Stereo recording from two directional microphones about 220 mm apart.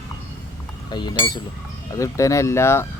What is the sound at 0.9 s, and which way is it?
Speech, 20° left (ahead or behind).